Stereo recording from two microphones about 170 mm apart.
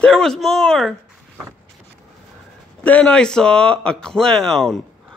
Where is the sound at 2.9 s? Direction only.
5° left (ahead or behind).